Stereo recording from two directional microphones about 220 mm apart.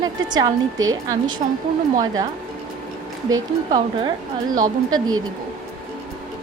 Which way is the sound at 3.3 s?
20° right (ahead or behind).